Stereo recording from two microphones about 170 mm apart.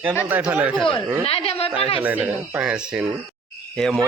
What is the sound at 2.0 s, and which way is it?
Speech, 10° right (ahead or behind).